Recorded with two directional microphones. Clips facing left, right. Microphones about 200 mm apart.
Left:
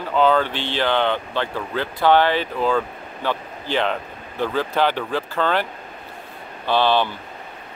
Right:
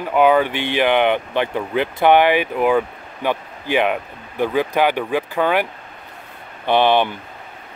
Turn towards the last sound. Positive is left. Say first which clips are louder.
# right 3 dB
turn(degrees=-20)  # may be behind; listen again after turning